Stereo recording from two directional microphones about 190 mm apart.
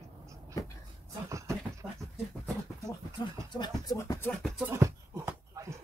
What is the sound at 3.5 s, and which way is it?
Speech, 20° left (ahead or behind).